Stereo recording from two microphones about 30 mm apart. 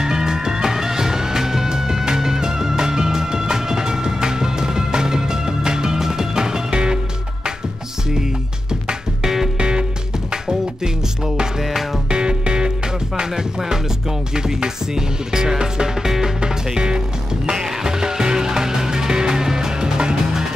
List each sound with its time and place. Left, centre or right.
0.0 s music: right
9.2 s music: centre
9.6 s music: right
11.6 s music: centre
12.1 s music: right
16.7 s music: right